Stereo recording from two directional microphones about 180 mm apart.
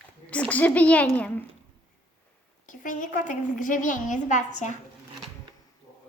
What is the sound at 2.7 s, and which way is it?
A woman's voice, 45° left (ahead or behind).